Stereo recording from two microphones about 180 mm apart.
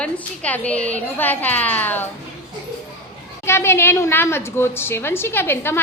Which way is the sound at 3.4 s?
15° left (ahead or behind).